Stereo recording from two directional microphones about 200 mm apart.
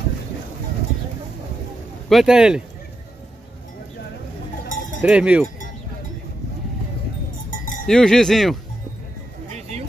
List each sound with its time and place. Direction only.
2.0 s speech: centre (ahead or behind)
5.0 s speech: 5° right (ahead or behind)
7.5 s cowbell: 45° left (ahead or behind)
7.8 s speech: 5° left (ahead or behind)
9.6 s a sound: 30° right (ahead or behind)